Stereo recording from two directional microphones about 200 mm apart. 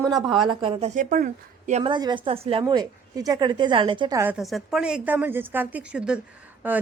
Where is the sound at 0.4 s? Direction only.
30° right (ahead or behind).